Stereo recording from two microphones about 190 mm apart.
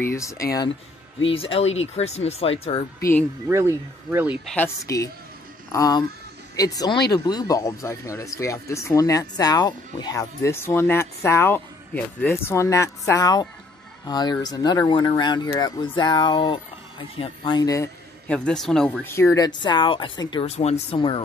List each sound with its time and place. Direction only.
0.0 s speech: 15° left (ahead or behind)
1.2 s speech: 30° left (ahead or behind)
3.0 s speech: 10° left (ahead or behind)
3.4 s speech: 15° right (ahead or behind)
4.8 s speech: 15° left (ahead or behind)
18.3 s speech: 5° left (ahead or behind); by 21.2 s 30° left (ahead or behind)